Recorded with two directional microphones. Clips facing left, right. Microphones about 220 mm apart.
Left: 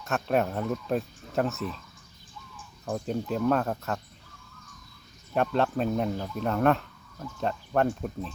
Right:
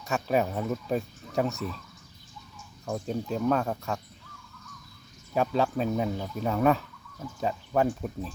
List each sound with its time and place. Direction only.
0.0 s speech: centre (ahead or behind)
2.8 s speech: centre (ahead or behind)
5.3 s speech: centre (ahead or behind)